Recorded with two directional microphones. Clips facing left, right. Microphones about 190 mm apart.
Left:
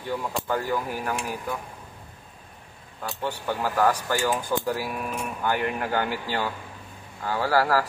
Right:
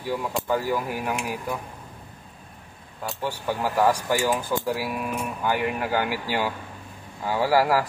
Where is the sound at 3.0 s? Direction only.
10° right (ahead or behind).